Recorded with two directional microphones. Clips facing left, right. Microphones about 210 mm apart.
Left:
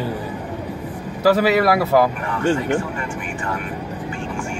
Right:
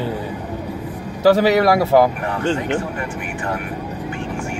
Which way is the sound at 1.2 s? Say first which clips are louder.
Right 2 dB; 25° right (ahead or behind).